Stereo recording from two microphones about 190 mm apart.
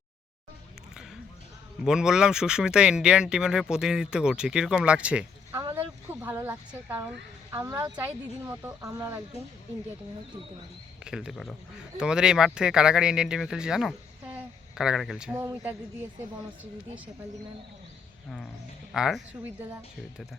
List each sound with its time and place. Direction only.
1.8 s speech: 5° right (ahead or behind)
11.0 s speech: 5° right (ahead or behind)
15.4 s speech: 15° right (ahead or behind)
18.9 s speech: centre (ahead or behind)